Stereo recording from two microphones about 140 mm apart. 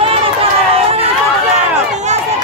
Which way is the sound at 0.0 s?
45° right (ahead or behind).